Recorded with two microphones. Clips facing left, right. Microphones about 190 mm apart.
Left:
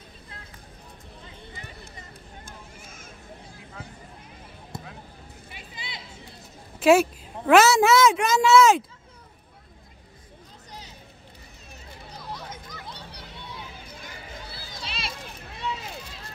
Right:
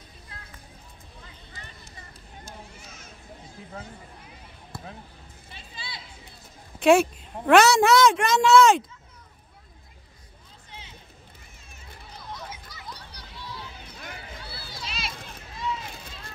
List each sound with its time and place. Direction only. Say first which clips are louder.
2.4 s run: right 1 dB; 50° left (ahead or behind)
4.7 s basketball bounce: left 1 dB; 20° left (ahead or behind)
5.5 s a sound: even; 20° left (ahead or behind)
6.8 s a woman's voice: even; centre (ahead or behind)
10.7 s hubbub: left 2 dB; 40° left (ahead or behind)
12.9 s children playing: left 3 dB; 25° left (ahead or behind)
14.9 s run: left 1 dB; centre (ahead or behind)